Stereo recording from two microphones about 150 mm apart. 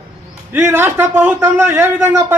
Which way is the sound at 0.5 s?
15° right (ahead or behind).